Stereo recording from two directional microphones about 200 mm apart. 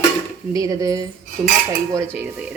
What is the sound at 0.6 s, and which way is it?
Dishes, 15° right (ahead or behind).